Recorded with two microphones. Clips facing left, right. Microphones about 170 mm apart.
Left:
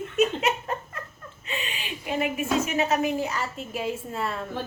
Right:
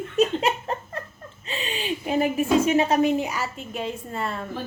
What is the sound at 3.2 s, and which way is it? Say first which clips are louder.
Speech: right 1 dB; 10° right (ahead or behind).